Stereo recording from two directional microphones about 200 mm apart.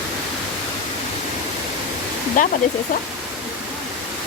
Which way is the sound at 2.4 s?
40° left (ahead or behind).